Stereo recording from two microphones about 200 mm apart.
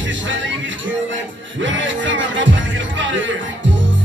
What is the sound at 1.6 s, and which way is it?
Music, 70° right (ahead or behind).